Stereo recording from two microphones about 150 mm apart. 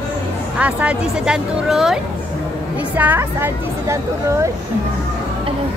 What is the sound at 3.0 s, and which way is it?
Speech, 10° right (ahead or behind).